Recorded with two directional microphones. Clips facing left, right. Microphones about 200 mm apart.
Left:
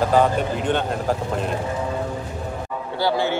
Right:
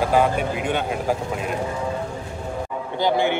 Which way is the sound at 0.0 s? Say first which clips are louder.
Left 1 dB; 10° right (ahead or behind).